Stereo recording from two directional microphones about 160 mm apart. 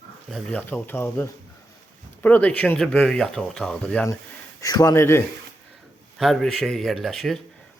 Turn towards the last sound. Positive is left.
turn(degrees=0)  # may be behind; listen again after turning